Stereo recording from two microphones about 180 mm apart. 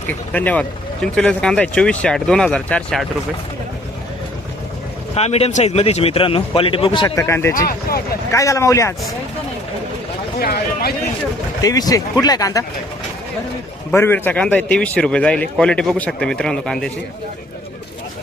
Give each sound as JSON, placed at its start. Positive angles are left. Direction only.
{"t": 0.1, "sound": "a man's voice", "side_deg": 10}
{"t": 5.1, "sound": "a man's voice", "side_deg": 35}
{"t": 7.7, "sound": "speech", "side_deg": 55}
{"t": 8.3, "sound": "speech", "side_deg": 15}
{"t": 10.4, "sound": "speech", "side_deg": 60}
{"t": 11.6, "sound": "speech", "side_deg": 20}
{"t": 13.9, "sound": "a man's voice", "side_deg": 10}